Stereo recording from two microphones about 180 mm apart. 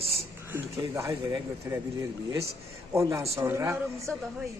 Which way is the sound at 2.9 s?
15° right (ahead or behind).